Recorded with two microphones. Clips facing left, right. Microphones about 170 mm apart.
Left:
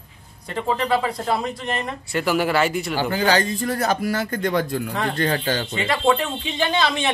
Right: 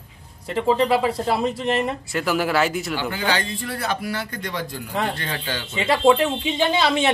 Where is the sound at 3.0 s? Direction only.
40° left (ahead or behind).